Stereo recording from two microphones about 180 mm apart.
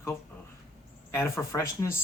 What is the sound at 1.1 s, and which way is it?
Speech, 15° left (ahead or behind).